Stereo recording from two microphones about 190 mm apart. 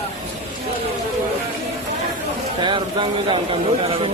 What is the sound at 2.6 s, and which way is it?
A man's voice, 25° right (ahead or behind).